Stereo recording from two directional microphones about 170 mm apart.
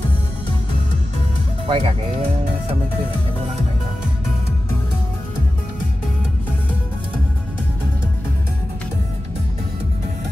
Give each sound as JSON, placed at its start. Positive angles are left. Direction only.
{"t": 1.7, "sound": "speech", "side_deg": -35}